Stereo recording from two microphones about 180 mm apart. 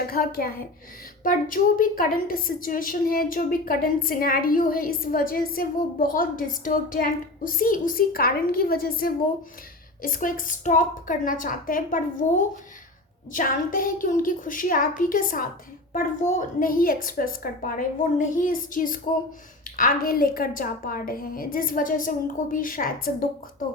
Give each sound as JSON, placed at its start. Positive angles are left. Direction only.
{"t": 0.1, "sound": "a woman's voice", "side_deg": 55}